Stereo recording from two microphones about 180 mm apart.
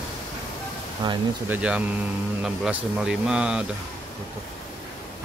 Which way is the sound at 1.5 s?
10° right (ahead or behind).